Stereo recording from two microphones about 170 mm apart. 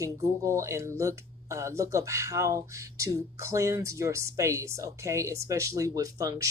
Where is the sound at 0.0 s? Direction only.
15° right (ahead or behind).